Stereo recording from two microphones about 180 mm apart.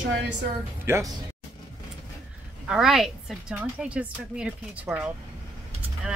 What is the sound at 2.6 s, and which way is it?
A woman's voice, 5° right (ahead or behind).